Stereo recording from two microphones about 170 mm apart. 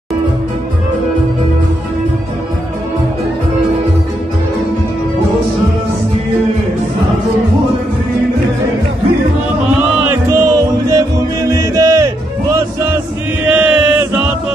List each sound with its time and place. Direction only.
10.3 s music: 20° right (ahead or behind)
13.5 s chant: 10° right (ahead or behind)